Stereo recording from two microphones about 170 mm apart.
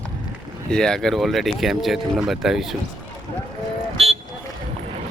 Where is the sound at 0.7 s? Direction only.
5° left (ahead or behind).